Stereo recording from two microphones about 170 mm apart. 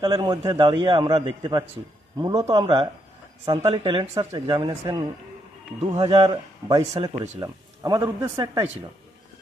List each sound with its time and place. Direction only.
0.0 s a man's voice: 25° right (ahead or behind)
4.7 s a man's voice: 15° right (ahead or behind)
5.8 s a man's voice: 35° right (ahead or behind)